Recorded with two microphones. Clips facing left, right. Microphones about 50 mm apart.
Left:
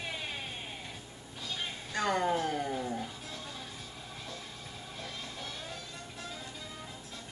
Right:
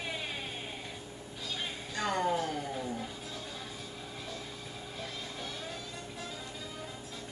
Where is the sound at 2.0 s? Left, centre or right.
Centre.